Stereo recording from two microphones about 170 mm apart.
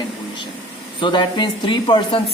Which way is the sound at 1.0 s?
25° left (ahead or behind).